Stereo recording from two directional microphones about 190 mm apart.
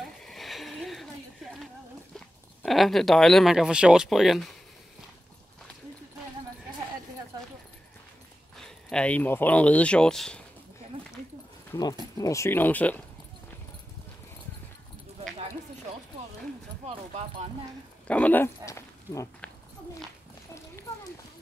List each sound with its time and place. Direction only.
0.2 s a sound: centre (ahead or behind)
2.1 s speech: centre (ahead or behind)
8.5 s speech: 5° left (ahead or behind)
11.7 s speech: 20° left (ahead or behind)
16.8 s speech: 30° right (ahead or behind)
18.0 s speech: 5° left (ahead or behind)